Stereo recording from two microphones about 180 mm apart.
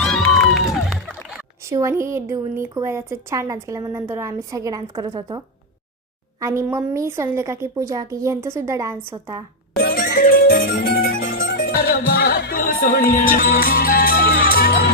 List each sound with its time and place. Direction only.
0.0 s music: centre (ahead or behind)
1.7 s a woman's voice: 15° right (ahead or behind)
6.4 s a woman's voice: 15° right (ahead or behind)
9.7 s music: 55° left (ahead or behind)